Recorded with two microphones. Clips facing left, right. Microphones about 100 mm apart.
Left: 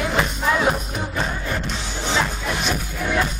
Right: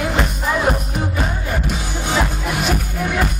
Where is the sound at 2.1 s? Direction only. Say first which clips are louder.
Right 2 dB; 5° right (ahead or behind).